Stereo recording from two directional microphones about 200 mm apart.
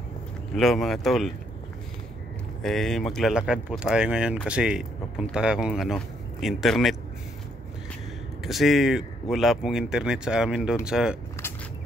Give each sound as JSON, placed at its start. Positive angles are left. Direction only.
{"t": 0.6, "sound": "speech", "side_deg": 0}
{"t": 2.6, "sound": "speech", "side_deg": 0}
{"t": 8.5, "sound": "speech", "side_deg": 0}